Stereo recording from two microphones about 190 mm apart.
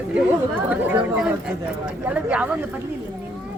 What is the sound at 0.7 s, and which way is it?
Speech, 5° right (ahead or behind).